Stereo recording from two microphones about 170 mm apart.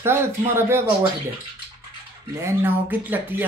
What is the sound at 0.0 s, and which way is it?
Speech, 15° right (ahead or behind).